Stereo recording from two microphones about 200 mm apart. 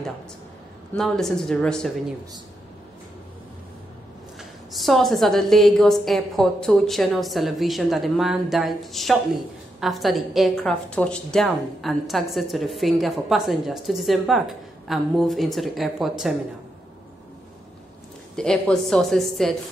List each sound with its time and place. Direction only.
0.9 s a woman's voice: centre (ahead or behind)
4.4 s a woman's voice: centre (ahead or behind)
18.3 s a woman's voice: 5° left (ahead or behind)